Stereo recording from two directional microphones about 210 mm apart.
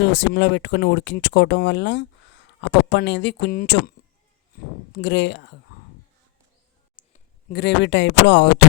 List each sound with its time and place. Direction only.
0.0 s speech: 55° left (ahead or behind)
4.9 s speech: 55° left (ahead or behind)
7.0 s a sound: 35° left (ahead or behind)
7.5 s speech: 55° left (ahead or behind)